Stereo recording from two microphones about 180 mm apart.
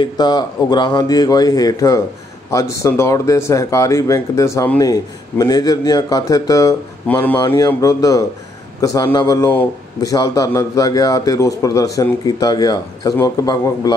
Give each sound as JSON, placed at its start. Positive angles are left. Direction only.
{"t": 0.0, "sound": "a man's voice", "side_deg": 25}